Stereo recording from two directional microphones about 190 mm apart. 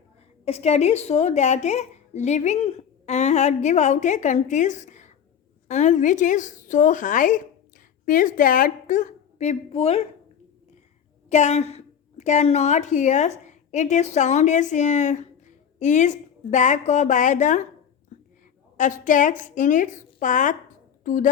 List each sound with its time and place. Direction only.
0.4 s a woman's voice: 35° left (ahead or behind)
11.3 s a woman's voice: 35° left (ahead or behind)
18.8 s a woman's voice: 40° left (ahead or behind)